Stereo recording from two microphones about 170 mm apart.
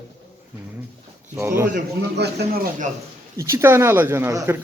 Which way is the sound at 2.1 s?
75° right (ahead or behind).